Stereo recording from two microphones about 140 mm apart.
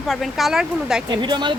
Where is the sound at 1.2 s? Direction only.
35° right (ahead or behind).